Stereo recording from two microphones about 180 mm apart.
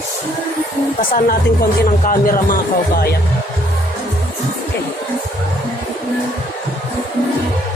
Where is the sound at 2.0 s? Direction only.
50° left (ahead or behind).